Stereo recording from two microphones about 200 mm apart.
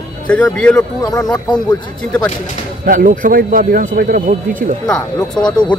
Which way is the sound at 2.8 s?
40° right (ahead or behind).